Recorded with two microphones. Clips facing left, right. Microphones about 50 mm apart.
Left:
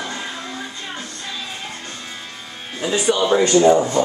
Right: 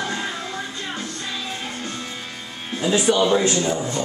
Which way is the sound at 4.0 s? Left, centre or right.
Left.